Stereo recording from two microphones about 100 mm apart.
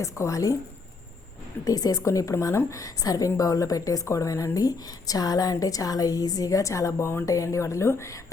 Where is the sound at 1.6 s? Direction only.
35° left (ahead or behind).